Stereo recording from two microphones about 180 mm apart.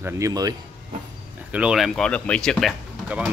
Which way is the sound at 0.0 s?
20° right (ahead or behind).